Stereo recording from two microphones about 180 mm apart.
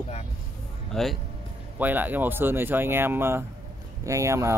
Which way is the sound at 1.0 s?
Centre (ahead or behind).